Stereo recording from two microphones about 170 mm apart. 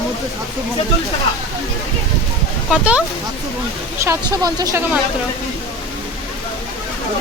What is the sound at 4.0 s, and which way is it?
Speech, 20° right (ahead or behind).